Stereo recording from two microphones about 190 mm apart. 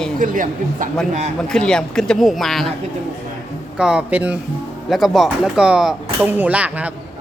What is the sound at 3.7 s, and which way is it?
A man's voice, 5° right (ahead or behind).